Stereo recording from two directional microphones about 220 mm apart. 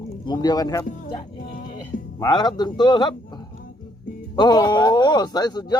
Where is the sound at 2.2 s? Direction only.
20° left (ahead or behind).